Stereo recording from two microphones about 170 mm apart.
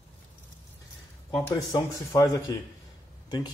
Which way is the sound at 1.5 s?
20° left (ahead or behind).